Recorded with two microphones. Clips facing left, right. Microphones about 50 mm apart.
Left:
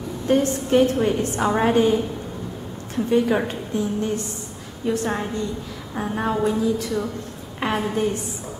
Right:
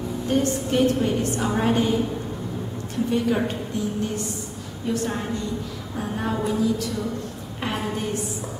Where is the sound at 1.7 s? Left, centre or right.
Centre.